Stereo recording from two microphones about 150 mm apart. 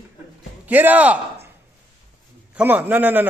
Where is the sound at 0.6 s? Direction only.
10° right (ahead or behind).